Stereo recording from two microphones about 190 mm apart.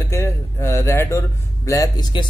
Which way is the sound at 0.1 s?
15° left (ahead or behind).